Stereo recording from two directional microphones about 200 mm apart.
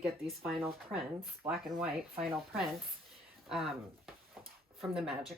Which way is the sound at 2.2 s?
Centre (ahead or behind).